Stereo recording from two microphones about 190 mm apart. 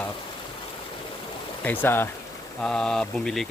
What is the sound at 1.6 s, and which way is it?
Speech, 10° left (ahead or behind).